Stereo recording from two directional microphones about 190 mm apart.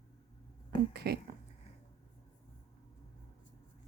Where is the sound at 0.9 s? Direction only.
60° right (ahead or behind).